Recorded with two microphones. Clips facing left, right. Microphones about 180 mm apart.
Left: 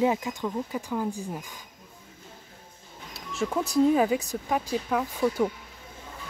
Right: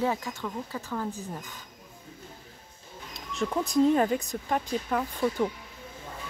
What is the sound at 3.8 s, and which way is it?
Speech, 5° left (ahead or behind).